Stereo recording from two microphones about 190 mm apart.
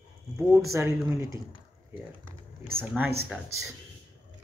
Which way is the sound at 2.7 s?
5° right (ahead or behind).